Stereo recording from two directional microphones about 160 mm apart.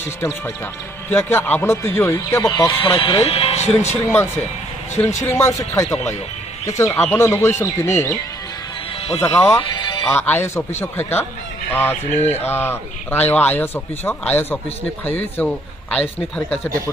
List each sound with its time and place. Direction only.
1.1 s a man's voice: 15° left (ahead or behind)
3.0 s speech: 35° left (ahead or behind)
4.0 s a man's voice: 15° left (ahead or behind)
9.2 s a man's voice: 15° left (ahead or behind)
9.6 s music: 30° left (ahead or behind)
10.0 s a man's voice: 10° left (ahead or behind)